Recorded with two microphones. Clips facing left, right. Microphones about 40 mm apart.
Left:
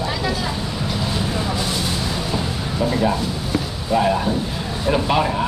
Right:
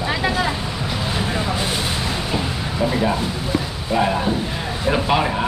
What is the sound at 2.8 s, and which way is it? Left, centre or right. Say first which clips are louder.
Speech: even; centre.